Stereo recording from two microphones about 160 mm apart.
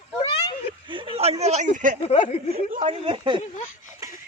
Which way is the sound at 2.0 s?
40° left (ahead or behind).